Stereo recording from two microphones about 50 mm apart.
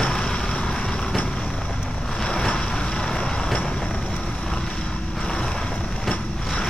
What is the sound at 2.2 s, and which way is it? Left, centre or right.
Boat, centre.